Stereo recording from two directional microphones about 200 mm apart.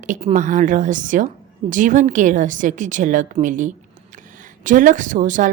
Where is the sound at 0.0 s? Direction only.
35° right (ahead or behind).